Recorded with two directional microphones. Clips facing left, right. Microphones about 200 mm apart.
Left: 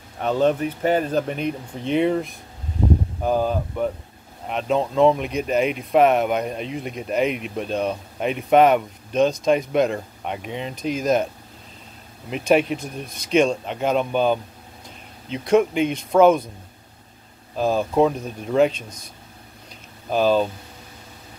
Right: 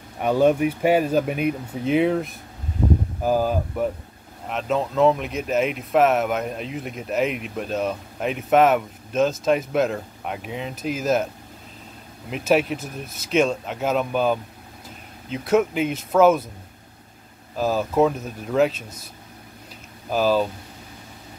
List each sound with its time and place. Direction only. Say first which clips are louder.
0.2 s speech: right 2 dB; 10° right (ahead or behind)
12.3 s speech: left 2 dB; 5° right (ahead or behind)
17.6 s speech: left 1 dB; 5° right (ahead or behind)
20.1 s speech: left 1 dB; 5° right (ahead or behind)